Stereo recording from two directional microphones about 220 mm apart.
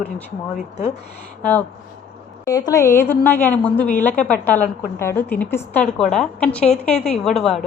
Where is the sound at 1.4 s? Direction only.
5° left (ahead or behind).